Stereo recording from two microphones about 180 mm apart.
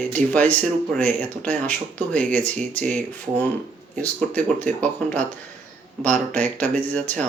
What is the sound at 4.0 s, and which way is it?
Speech, 10° left (ahead or behind).